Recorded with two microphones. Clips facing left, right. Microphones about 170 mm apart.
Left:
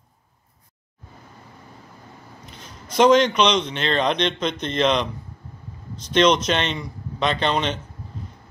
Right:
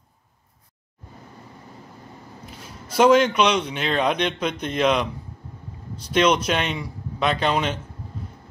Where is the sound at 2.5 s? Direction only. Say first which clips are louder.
Even; 5° right (ahead or behind).